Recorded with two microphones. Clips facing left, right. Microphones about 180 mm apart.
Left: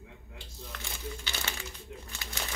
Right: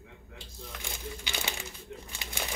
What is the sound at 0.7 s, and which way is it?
Crumpling, 15° right (ahead or behind).